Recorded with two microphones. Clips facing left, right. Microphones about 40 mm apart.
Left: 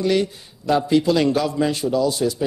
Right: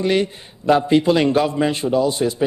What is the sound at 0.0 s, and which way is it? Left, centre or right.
A man's voice, right.